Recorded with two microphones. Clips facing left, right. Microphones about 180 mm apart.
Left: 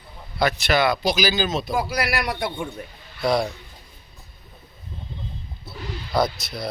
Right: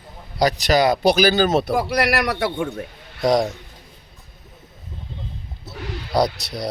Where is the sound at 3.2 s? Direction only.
45° right (ahead or behind).